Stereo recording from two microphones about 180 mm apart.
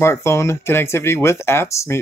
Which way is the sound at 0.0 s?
15° left (ahead or behind).